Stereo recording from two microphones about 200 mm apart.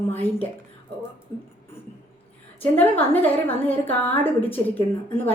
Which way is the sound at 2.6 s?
10° left (ahead or behind).